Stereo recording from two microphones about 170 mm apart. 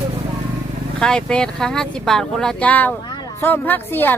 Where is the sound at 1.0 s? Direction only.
5° left (ahead or behind).